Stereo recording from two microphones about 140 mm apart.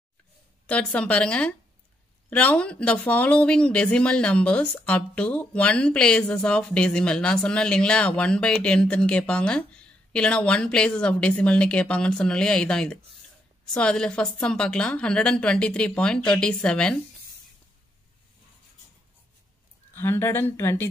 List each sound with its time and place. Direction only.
0.7 s speech: 10° left (ahead or behind)
19.9 s speech: 15° left (ahead or behind)